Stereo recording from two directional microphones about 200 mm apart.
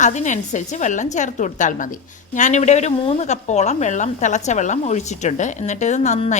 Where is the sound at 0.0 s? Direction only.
35° left (ahead or behind).